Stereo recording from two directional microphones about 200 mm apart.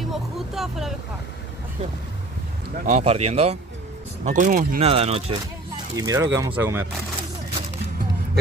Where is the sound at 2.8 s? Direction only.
35° right (ahead or behind).